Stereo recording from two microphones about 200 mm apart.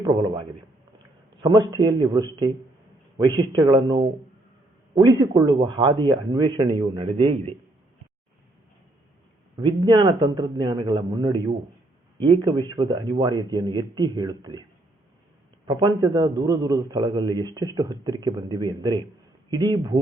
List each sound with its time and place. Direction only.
0.0 s a man's voice: 20° right (ahead or behind)
9.6 s a man's voice: 20° right (ahead or behind)
15.6 s a man's voice: 20° right (ahead or behind)